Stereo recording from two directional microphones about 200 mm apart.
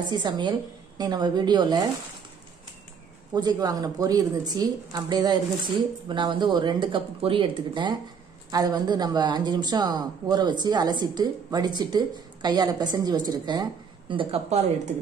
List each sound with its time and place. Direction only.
0.1 s speech: 20° right (ahead or behind)
3.3 s speech: 20° right (ahead or behind)